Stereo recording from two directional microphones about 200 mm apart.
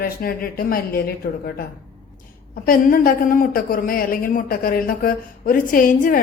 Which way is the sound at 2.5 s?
45° left (ahead or behind).